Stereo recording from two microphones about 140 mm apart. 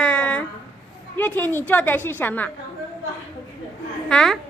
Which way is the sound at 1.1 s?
15° left (ahead or behind).